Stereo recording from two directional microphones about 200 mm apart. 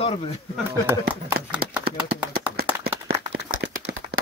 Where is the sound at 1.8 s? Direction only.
50° right (ahead or behind).